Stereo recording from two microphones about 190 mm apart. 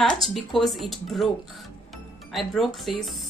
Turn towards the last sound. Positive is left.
turn(degrees=0)  # may be behind; listen again after turning